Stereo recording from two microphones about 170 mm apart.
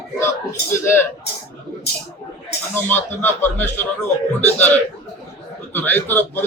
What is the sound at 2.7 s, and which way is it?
A man's voice, 10° left (ahead or behind).